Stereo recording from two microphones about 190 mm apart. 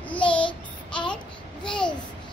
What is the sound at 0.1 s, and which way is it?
Child singing, 5° left (ahead or behind).